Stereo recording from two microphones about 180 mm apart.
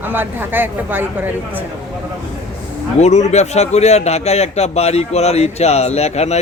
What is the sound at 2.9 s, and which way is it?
A man's voice, 40° left (ahead or behind).